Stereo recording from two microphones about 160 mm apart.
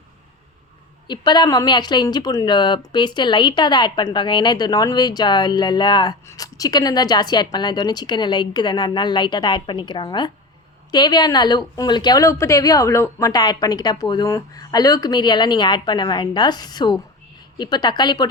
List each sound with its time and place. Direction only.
1.0 s speech: 25° left (ahead or behind)